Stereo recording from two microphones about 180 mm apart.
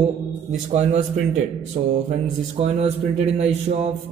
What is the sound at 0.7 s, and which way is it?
Speech, 40° right (ahead or behind).